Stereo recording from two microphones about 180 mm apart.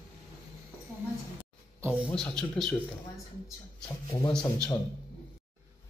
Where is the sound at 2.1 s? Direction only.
5° left (ahead or behind).